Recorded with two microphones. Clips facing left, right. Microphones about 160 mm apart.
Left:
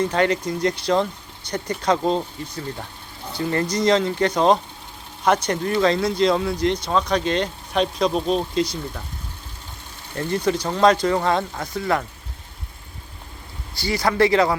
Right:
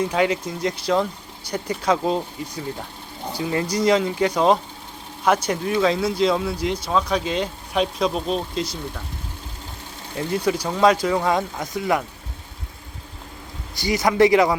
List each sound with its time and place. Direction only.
0.0 s speech: 5° right (ahead or behind)
3.3 s speech: 10° right (ahead or behind)
10.2 s speech: 10° right (ahead or behind)
13.7 s speech: 20° right (ahead or behind)